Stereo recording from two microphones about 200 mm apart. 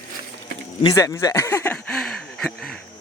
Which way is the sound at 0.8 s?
15° left (ahead or behind).